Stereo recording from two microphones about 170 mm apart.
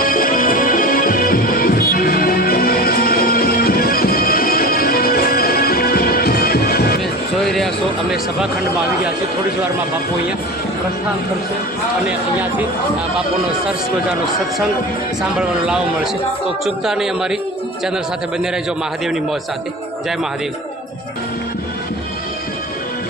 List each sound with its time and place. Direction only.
0.0 s music: 55° left (ahead or behind)
7.4 s a sound: centre (ahead or behind)
12.0 s speech: 10° right (ahead or behind)
15.4 s a man's voice: 5° right (ahead or behind)
19.0 s a man's voice: centre (ahead or behind)